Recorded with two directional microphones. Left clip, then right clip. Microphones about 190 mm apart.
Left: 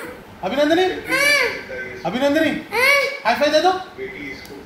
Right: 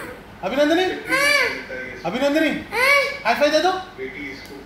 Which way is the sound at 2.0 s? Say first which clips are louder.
Left 1 dB; 15° right (ahead or behind).